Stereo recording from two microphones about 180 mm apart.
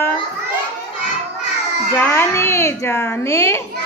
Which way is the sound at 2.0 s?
15° left (ahead or behind).